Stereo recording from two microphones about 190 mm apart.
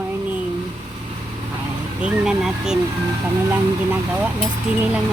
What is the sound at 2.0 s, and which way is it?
Speech, 5° right (ahead or behind).